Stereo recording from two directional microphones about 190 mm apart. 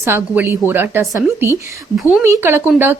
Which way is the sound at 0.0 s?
15° right (ahead or behind).